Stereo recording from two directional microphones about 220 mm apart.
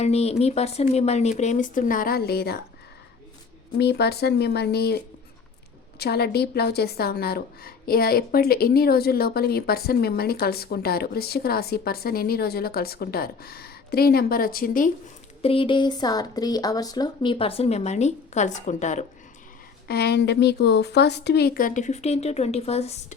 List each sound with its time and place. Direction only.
0.0 s speech: 30° left (ahead or behind); by 2.6 s 45° left (ahead or behind)
3.8 s a woman's voice: 50° left (ahead or behind)
15.4 s speech: 25° left (ahead or behind)
19.9 s a woman's voice: 45° left (ahead or behind); by 23.1 s 30° left (ahead or behind)